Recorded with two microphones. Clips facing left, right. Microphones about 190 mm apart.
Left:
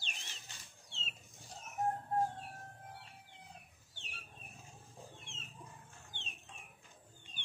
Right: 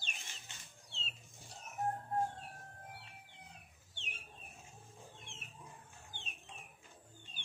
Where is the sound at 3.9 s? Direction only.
20° right (ahead or behind).